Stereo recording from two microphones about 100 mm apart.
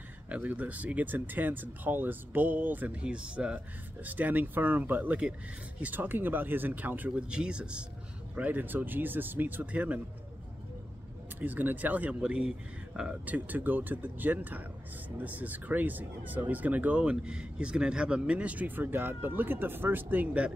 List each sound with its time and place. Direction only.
0.3 s speech: 15° right (ahead or behind)
11.3 s speech: 15° right (ahead or behind)